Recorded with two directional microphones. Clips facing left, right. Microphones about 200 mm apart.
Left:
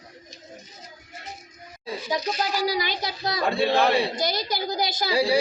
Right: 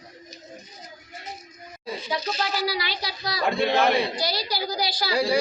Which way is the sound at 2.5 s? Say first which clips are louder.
Left 2 dB; 45° left (ahead or behind).